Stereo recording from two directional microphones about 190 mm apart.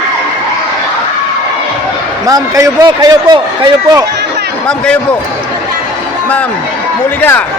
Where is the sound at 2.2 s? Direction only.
20° right (ahead or behind).